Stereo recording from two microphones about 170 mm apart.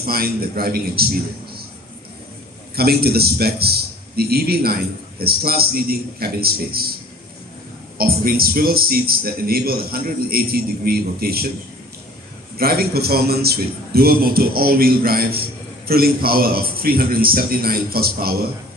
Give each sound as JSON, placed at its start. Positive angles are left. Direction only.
{"t": 0.0, "sound": "a man's voice", "side_deg": -60}
{"t": 2.7, "sound": "a man's voice", "side_deg": -65}
{"t": 8.0, "sound": "a man's voice", "side_deg": -60}
{"t": 12.5, "sound": "a man's voice", "side_deg": -65}